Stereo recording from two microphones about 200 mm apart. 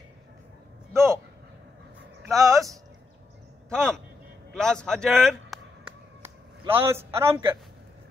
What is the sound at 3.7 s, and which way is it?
Speech, 5° left (ahead or behind).